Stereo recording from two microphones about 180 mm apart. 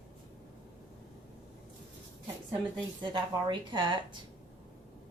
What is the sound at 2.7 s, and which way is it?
A woman's voice, 25° right (ahead or behind).